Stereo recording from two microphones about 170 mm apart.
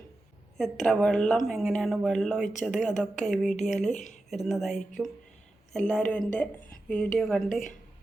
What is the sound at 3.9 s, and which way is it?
Speech, 45° left (ahead or behind).